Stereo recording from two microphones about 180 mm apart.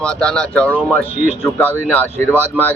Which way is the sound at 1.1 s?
45° right (ahead or behind).